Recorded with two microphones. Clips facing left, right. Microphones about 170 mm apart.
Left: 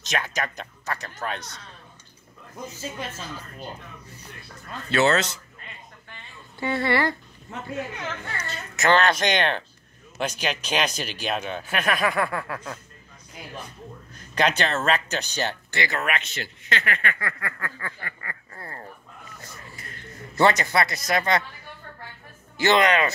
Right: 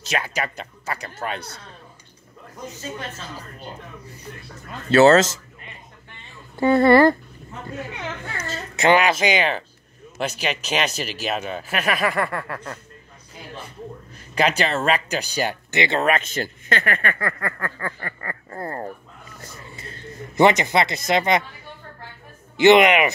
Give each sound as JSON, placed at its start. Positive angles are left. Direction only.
{"t": 0.1, "sound": "speech", "side_deg": -10}
{"t": 4.9, "sound": "speech", "side_deg": -40}
{"t": 6.5, "sound": "speech", "side_deg": -50}
{"t": 8.4, "sound": "a child's voice", "side_deg": -40}
{"t": 8.8, "sound": "speech", "side_deg": -10}
{"t": 14.1, "sound": "speech", "side_deg": -5}
{"t": 15.8, "sound": "speech", "side_deg": -25}
{"t": 16.1, "sound": "speech", "side_deg": -45}
{"t": 19.6, "sound": "a sound", "side_deg": -25}
{"t": 22.6, "sound": "speech", "side_deg": -20}